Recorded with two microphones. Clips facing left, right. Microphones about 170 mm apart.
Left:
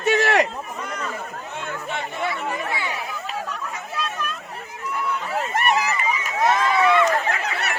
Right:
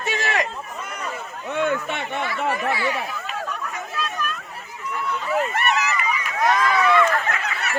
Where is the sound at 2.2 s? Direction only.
25° left (ahead or behind).